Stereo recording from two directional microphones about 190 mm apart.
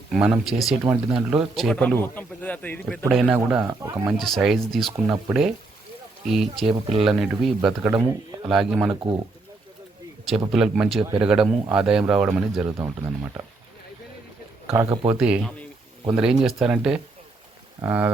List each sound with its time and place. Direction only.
0.1 s speech: centre (ahead or behind)
3.0 s speech: 5° right (ahead or behind)
4.0 s speech: centre (ahead or behind)
8.0 s speech: 20° right (ahead or behind)
8.4 s speech: centre (ahead or behind)
10.5 s speech: 5° right (ahead or behind)
14.7 s speech: 20° right (ahead or behind)
15.2 s speech: 5° right (ahead or behind)